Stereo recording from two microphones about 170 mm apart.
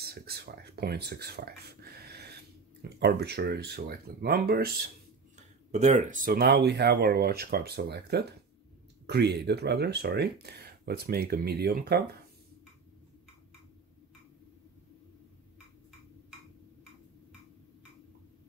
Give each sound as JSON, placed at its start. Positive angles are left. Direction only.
{"t": 0.0, "sound": "speech", "side_deg": -65}
{"t": 5.7, "sound": "speech", "side_deg": -40}